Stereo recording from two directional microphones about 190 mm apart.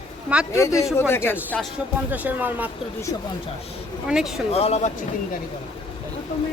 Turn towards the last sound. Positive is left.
turn(degrees=35)  # may be behind; listen again after turning